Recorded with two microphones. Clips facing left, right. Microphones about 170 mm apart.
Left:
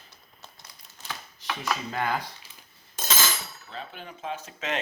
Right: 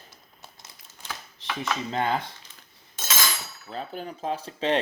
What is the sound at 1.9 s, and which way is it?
Speech, 25° right (ahead or behind).